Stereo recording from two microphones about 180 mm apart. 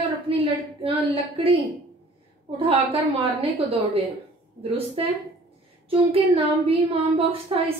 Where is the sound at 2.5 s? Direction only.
30° right (ahead or behind).